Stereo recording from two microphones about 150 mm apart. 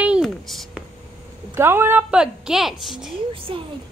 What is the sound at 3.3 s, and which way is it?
Speech, 35° right (ahead or behind).